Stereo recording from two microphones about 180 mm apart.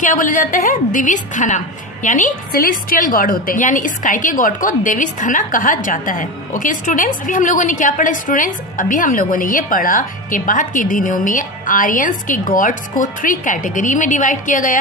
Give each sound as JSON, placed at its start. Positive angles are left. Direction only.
{"t": 0.0, "sound": "a woman's voice", "side_deg": 45}